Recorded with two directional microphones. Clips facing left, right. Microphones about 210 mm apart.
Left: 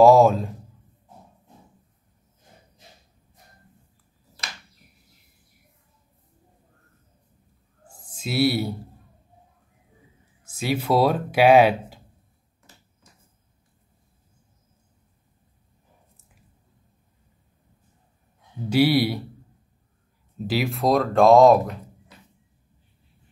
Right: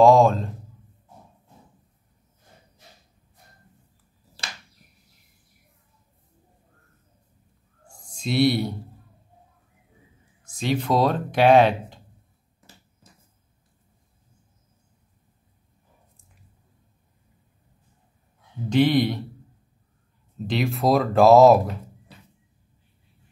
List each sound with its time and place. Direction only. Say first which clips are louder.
0.0 s a man's voice: left 1 dB; 5° left (ahead or behind)
8.2 s speech: right 1 dB; 5° left (ahead or behind)
10.4 s speech: right 1 dB; 5° left (ahead or behind)
18.7 s speech: even; 10° left (ahead or behind)
20.3 s speech: even; 5° left (ahead or behind)